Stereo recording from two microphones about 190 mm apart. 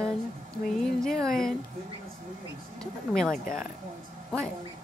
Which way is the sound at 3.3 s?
45° left (ahead or behind).